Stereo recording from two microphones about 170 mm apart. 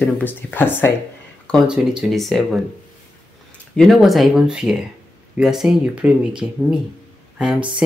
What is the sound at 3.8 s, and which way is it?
Speech, centre (ahead or behind).